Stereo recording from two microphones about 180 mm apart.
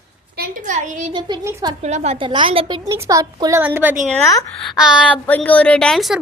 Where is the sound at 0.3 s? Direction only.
55° right (ahead or behind).